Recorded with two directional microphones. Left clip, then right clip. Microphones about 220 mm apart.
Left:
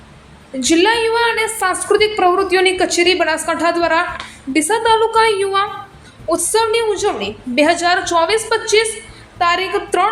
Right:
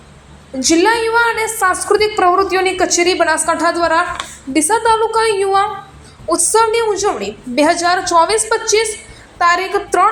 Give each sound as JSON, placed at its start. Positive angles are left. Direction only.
{"t": 0.6, "sound": "a woman's voice", "side_deg": 0}